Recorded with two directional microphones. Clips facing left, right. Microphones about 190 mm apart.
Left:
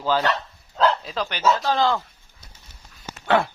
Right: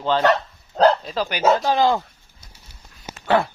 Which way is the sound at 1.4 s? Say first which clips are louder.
Right 4 dB; 55° right (ahead or behind).